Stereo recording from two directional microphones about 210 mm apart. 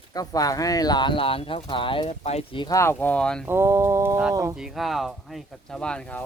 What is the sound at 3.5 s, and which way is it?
Speech, 10° right (ahead or behind).